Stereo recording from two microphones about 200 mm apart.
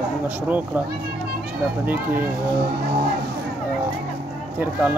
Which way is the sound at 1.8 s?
10° right (ahead or behind).